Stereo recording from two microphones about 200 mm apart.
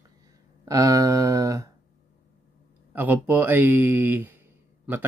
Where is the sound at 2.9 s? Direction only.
10° right (ahead or behind).